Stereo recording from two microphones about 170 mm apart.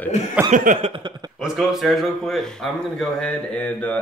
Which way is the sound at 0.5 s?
50° right (ahead or behind).